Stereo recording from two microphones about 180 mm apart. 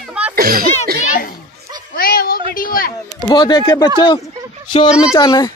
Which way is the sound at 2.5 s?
50° left (ahead or behind).